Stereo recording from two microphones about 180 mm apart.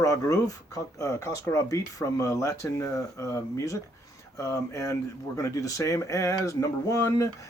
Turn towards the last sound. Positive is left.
turn(degrees=20)  # may be behind; listen again after turning